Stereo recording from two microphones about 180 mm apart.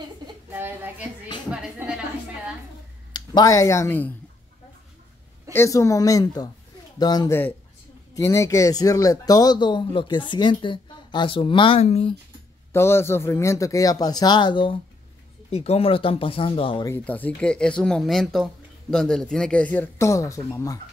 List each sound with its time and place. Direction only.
0.5 s child singing: 10° right (ahead or behind)
1.5 s speech: 5° right (ahead or behind)
3.1 s speech: 20° left (ahead or behind)
5.5 s speech: 15° left (ahead or behind); by 12.2 s 35° left (ahead or behind)
12.7 s speech: 15° left (ahead or behind)
16.9 s speech: 10° left (ahead or behind)